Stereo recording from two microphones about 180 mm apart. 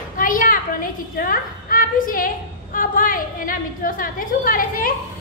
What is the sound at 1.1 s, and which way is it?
A woman's voice, 50° left (ahead or behind).